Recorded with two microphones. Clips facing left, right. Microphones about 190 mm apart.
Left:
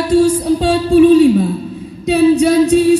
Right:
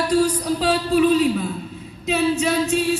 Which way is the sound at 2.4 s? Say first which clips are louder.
Left 10 dB; 35° left (ahead or behind).